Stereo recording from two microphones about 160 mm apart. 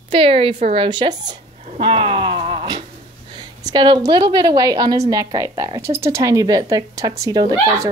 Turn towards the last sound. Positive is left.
turn(degrees=-25)  # may be behind; listen again after turning